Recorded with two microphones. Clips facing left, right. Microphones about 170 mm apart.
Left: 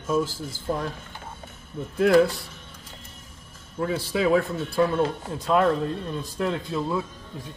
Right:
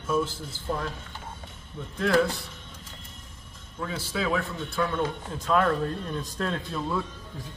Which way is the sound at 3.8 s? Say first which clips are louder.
Left 6 dB; 35° left (ahead or behind).